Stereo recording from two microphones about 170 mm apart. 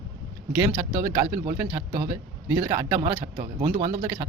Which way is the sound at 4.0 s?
15° right (ahead or behind).